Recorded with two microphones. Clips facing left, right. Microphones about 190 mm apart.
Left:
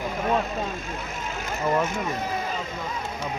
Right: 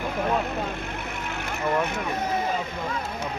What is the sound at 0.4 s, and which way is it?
Vehicle, 65° right (ahead or behind).